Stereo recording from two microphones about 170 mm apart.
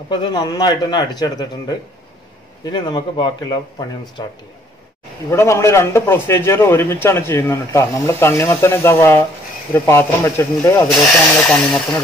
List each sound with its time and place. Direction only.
0.1 s a man's voice: 25° left (ahead or behind)
10.9 s speech: 5° left (ahead or behind)